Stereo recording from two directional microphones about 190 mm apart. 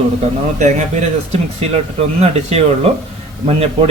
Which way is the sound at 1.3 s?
35° right (ahead or behind).